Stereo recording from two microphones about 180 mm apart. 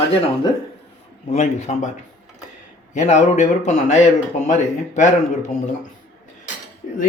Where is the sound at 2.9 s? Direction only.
40° left (ahead or behind).